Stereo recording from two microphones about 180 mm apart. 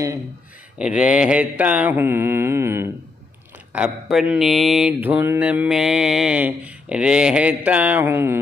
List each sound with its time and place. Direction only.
0.7 s mantra: 5° right (ahead or behind)
3.7 s mantra: 5° right (ahead or behind)